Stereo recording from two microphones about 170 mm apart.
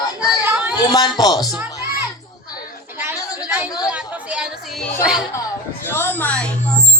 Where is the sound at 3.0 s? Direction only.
10° right (ahead or behind).